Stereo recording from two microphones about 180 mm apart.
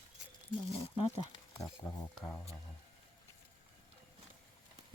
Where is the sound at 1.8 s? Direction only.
5° left (ahead or behind).